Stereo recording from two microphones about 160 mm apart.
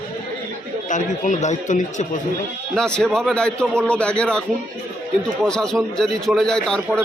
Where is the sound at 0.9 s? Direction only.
50° left (ahead or behind).